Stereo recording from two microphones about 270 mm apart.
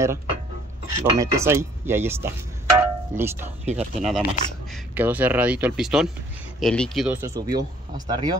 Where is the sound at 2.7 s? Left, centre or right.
Centre.